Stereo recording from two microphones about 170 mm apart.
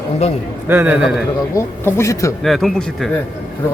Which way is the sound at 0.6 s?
10° right (ahead or behind).